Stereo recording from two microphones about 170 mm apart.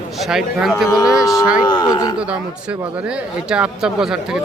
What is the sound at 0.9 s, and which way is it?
Speech, 20° left (ahead or behind).